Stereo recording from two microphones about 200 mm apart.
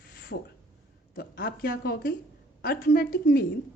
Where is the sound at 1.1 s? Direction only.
60° left (ahead or behind).